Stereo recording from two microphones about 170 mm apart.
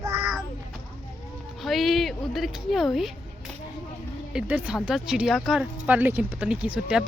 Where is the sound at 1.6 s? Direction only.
Centre (ahead or behind).